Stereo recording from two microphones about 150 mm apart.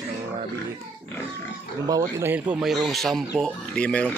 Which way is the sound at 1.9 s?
25° right (ahead or behind).